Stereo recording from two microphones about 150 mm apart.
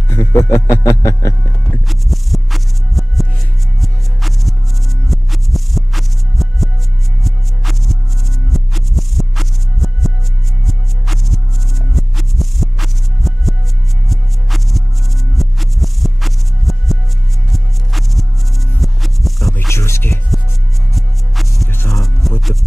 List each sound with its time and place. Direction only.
0.1 s music: 20° left (ahead or behind)
1.9 s music: centre (ahead or behind)
19.7 s music: 15° left (ahead or behind)
20.9 s music: centre (ahead or behind)